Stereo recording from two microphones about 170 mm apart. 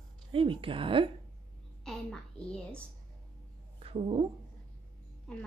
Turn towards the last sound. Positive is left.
turn(degrees=5)  # may be behind; listen again after turning